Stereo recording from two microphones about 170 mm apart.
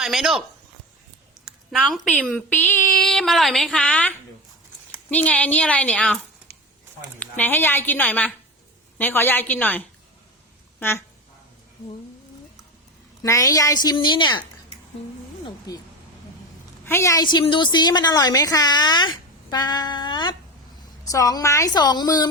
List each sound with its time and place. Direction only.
0.0 s speech: centre (ahead or behind)
1.5 s a sound: 5° right (ahead or behind)
2.9 s a woman's voice: 5° left (ahead or behind)
7.2 s a woman's voice: 10° left (ahead or behind)
13.2 s a woman's voice: 20° left (ahead or behind)
15.7 s a woman's voice: 25° left (ahead or behind)
16.8 s a woman's voice: 15° left (ahead or behind)